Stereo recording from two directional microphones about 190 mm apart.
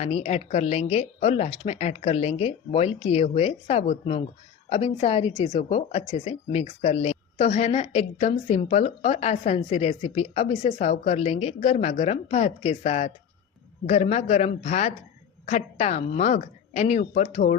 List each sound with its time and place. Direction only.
0.0 s speech: 35° left (ahead or behind)